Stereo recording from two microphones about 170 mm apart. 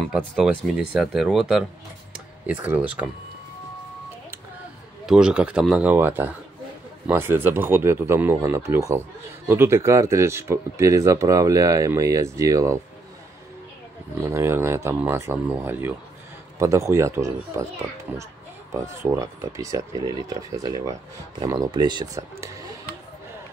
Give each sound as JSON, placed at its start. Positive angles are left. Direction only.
{"t": 0.4, "sound": "speech", "side_deg": -5}
{"t": 5.0, "sound": "speech", "side_deg": -5}
{"t": 14.2, "sound": "speech", "side_deg": -15}
{"t": 18.7, "sound": "speech", "side_deg": -20}